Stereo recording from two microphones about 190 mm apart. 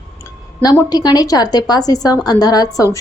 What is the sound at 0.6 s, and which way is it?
A woman's voice, 20° left (ahead or behind).